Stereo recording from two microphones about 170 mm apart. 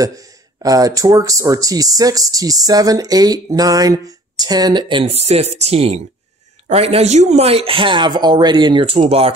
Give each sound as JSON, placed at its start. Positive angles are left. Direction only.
{"t": 0.6, "sound": "speech", "side_deg": -20}